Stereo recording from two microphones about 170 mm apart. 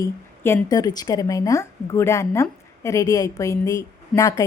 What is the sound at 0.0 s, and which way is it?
A woman's voice, 15° left (ahead or behind).